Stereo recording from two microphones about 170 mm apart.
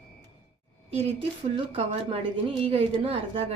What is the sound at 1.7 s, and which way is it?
A woman's voice, 35° right (ahead or behind).